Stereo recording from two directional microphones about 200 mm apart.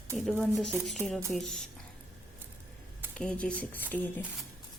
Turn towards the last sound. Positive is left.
turn(degrees=10)  # may be behind; listen again after turning